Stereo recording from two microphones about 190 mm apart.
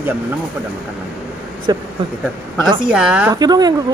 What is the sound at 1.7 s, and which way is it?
Speech, 20° right (ahead or behind).